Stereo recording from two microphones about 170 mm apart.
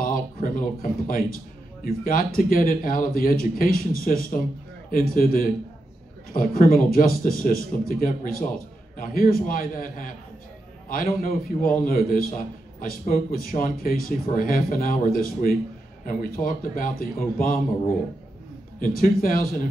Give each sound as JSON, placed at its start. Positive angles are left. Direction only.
{"t": 0.0, "sound": "a man's voice", "side_deg": 55}
{"t": 18.8, "sound": "a man's voice", "side_deg": 55}